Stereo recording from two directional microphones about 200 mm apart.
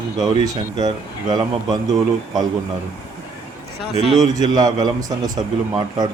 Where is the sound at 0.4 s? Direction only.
20° right (ahead or behind).